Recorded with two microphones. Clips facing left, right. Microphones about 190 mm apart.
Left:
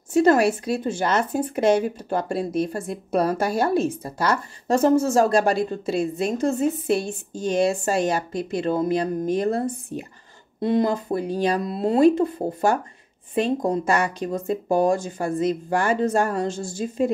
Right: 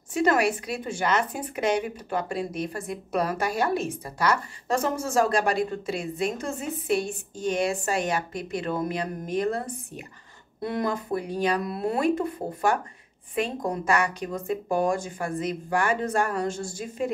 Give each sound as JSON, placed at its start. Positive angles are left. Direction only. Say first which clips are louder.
{"t": 0.2, "sound": "a woman's voice", "louder": "left 5 dB", "side_deg": 30}